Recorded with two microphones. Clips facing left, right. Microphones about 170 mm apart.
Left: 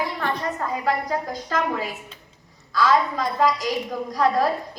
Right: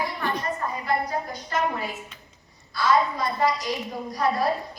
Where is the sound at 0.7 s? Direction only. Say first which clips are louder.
Left 4 dB; 90° left.